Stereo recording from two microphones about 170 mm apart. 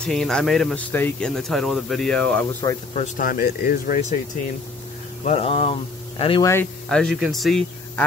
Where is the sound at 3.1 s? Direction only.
60° left (ahead or behind).